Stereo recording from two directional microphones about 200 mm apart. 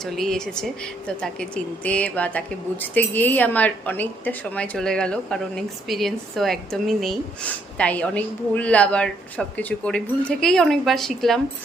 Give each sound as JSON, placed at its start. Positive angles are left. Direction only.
{"t": 0.0, "sound": "a woman's voice", "side_deg": 0}